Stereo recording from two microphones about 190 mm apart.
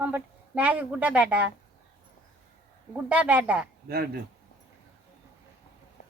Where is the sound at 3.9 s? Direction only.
55° right (ahead or behind).